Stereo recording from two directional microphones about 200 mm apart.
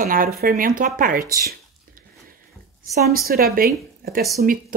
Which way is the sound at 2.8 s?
50° right (ahead or behind).